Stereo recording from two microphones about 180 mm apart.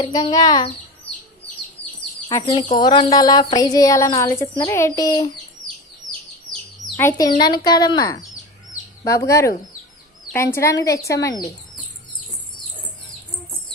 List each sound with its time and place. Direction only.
0.0 s speech: 25° left (ahead or behind)
2.3 s speech: 25° left (ahead or behind)
6.1 s chirp: 5° left (ahead or behind)
7.1 s a woman's voice: 25° left (ahead or behind)